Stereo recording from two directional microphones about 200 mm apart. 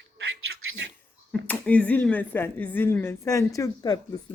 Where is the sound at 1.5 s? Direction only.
10° left (ahead or behind).